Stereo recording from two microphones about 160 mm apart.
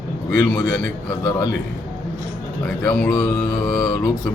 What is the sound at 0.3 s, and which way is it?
Speech, 15° left (ahead or behind).